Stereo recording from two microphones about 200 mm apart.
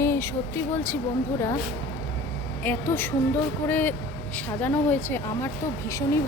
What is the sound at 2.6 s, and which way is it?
Speech, 10° left (ahead or behind).